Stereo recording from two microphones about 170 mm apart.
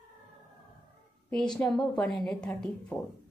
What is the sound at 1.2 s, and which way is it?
A woman's voice, 5° left (ahead or behind).